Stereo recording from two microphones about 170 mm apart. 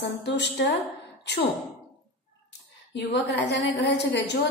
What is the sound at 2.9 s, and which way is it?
A woman's voice, 90° left.